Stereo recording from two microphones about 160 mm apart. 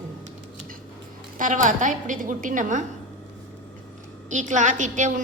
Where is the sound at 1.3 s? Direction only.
55° right (ahead or behind).